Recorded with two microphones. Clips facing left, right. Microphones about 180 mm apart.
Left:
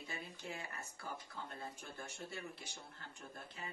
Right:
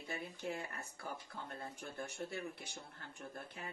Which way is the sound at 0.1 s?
55° right (ahead or behind).